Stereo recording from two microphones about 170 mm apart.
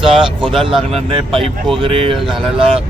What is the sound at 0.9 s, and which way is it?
Speech, 35° right (ahead or behind).